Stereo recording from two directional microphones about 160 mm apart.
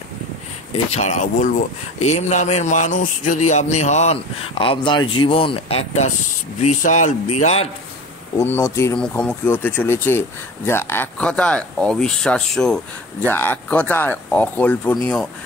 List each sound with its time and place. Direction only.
0.9 s a man's voice: 50° left (ahead or behind)
8.4 s speech: 15° left (ahead or behind)
8.9 s speech: 5° left (ahead or behind)